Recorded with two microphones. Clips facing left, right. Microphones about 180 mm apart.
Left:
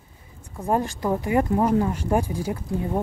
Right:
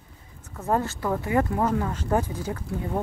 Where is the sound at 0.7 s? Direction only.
15° left (ahead or behind).